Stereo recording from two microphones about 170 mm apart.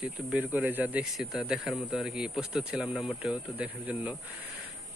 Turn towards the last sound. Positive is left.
turn(degrees=-10)  # may be behind; listen again after turning